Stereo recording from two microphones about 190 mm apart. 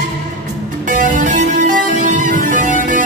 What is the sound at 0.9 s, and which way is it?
Music, 40° right (ahead or behind).